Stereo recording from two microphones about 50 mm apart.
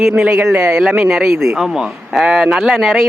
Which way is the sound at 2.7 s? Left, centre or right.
Centre.